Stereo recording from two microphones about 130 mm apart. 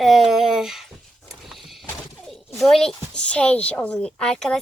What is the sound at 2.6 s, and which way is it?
A woman's voice, centre (ahead or behind).